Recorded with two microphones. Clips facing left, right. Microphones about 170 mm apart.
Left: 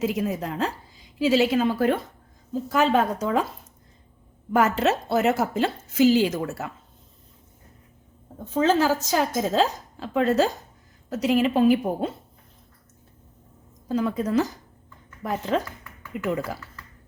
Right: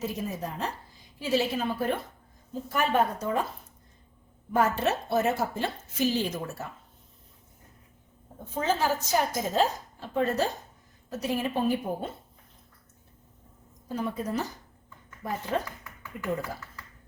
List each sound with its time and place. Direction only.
0.0 s speech: 90° left
4.5 s speech: 90° left
8.5 s speech: 90° left
13.8 s speech: 90° left